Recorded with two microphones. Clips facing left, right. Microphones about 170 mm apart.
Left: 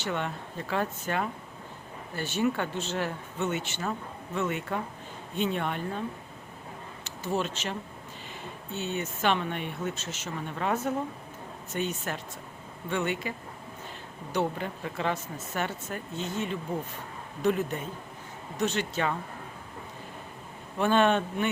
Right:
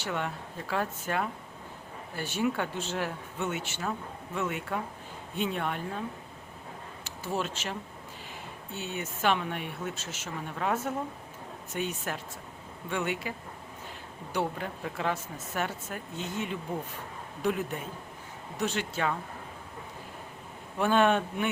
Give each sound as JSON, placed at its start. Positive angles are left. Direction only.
{"t": 0.0, "sound": "speech", "side_deg": -5}
{"t": 7.0, "sound": "speech", "side_deg": -5}
{"t": 14.3, "sound": "speech", "side_deg": -5}
{"t": 20.7, "sound": "speech", "side_deg": -5}